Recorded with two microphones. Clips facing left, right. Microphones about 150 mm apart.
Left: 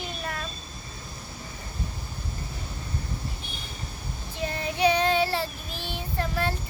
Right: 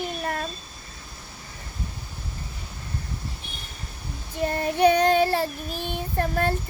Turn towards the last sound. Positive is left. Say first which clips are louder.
# right 4 dB
turn(degrees=-50)  # may be behind; listen again after turning